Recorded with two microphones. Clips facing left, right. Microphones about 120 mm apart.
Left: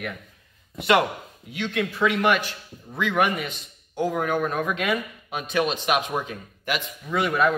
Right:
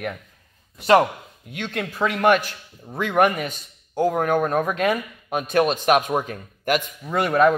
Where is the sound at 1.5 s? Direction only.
50° right (ahead or behind).